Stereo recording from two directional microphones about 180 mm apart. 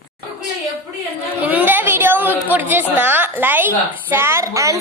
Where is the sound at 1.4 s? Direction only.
10° right (ahead or behind).